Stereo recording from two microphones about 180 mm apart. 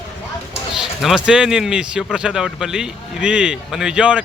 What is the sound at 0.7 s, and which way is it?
Speech, centre (ahead or behind).